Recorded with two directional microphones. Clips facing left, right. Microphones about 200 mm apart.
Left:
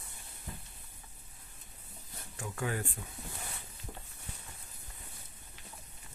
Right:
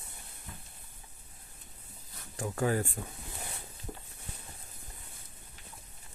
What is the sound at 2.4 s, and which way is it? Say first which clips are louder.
Speech: right 6 dB; 40° right (ahead or behind).